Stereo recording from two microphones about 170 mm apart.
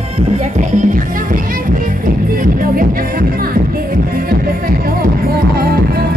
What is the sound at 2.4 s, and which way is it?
Music, 55° right (ahead or behind).